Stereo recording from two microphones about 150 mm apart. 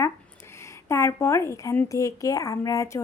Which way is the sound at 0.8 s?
20° left (ahead or behind).